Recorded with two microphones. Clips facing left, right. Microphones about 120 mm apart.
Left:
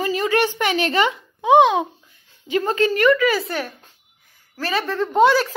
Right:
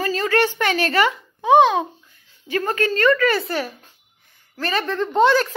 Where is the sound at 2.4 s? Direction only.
20° left (ahead or behind).